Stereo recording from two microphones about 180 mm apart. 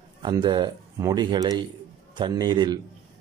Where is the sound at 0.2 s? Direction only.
25° right (ahead or behind).